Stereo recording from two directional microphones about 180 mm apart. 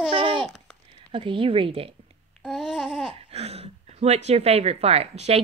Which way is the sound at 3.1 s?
35° right (ahead or behind).